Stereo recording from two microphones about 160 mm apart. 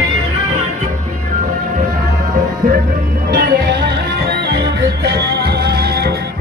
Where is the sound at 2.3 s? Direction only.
60° right (ahead or behind).